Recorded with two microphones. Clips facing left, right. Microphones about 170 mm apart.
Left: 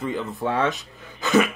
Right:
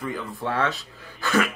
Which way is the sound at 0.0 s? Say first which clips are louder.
Left 4 dB; 25° left (ahead or behind).